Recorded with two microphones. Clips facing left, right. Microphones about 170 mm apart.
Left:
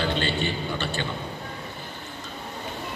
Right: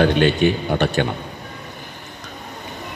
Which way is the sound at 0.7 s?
60° right (ahead or behind).